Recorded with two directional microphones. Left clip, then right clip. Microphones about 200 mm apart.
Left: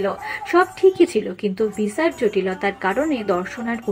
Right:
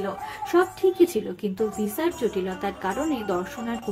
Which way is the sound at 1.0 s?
Centre (ahead or behind).